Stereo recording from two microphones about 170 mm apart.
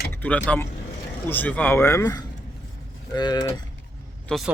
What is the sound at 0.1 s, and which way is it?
Speech, 10° left (ahead or behind).